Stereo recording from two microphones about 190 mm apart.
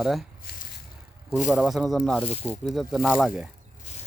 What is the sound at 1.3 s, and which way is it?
Speech, 5° right (ahead or behind).